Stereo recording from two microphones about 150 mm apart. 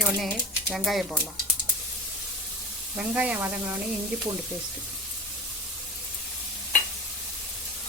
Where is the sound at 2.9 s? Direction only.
10° right (ahead or behind).